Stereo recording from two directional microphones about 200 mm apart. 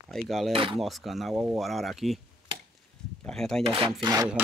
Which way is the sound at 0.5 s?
25° right (ahead or behind).